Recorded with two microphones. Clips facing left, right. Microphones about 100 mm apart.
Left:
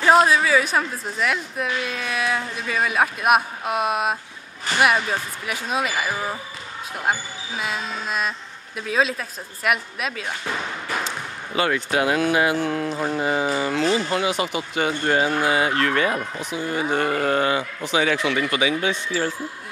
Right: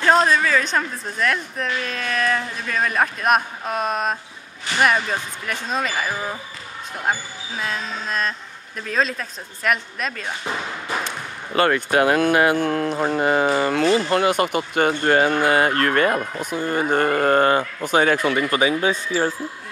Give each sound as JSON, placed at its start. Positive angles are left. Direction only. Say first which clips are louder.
{"t": 0.0, "sound": "a woman's voice", "louder": "left 1 dB", "side_deg": 5}
{"t": 10.4, "sound": "speech", "louder": "right 2 dB", "side_deg": -15}
{"t": 11.1, "sound": "speech", "louder": "even", "side_deg": -55}